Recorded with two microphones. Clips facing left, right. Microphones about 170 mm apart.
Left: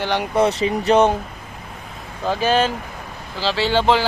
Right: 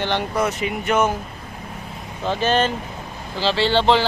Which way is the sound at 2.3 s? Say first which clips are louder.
Left 1 dB; 10° left (ahead or behind).